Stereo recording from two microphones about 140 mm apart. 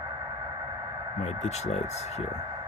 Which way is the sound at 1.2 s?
50° left (ahead or behind).